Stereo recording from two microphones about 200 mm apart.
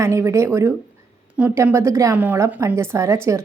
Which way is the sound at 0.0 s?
15° right (ahead or behind).